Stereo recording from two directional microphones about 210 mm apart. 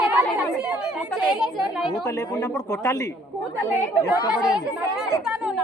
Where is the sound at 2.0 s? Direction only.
15° left (ahead or behind).